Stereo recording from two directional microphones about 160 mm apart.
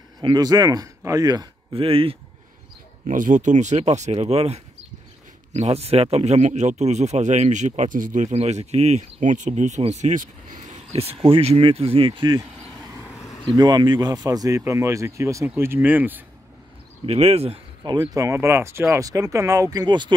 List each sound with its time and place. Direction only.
0.2 s speech: 25° right (ahead or behind)
1.7 s speech: 35° right (ahead or behind)
3.1 s speech: 55° right (ahead or behind); by 12.4 s 25° right (ahead or behind)
13.1 s insect: 20° left (ahead or behind)
13.6 s speech: 25° right (ahead or behind)
17.0 s speech: 40° right (ahead or behind)
17.8 s speech: 25° right (ahead or behind)